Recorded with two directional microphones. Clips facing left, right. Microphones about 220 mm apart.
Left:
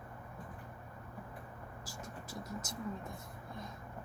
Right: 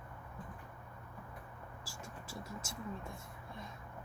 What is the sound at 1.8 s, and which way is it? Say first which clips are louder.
Vehicle: left 2 dB; 20° left (ahead or behind).